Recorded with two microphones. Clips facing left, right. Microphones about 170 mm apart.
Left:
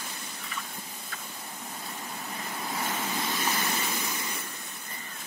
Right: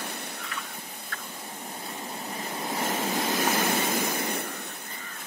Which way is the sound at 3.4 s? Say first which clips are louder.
Right 5 dB; 50° right (ahead or behind).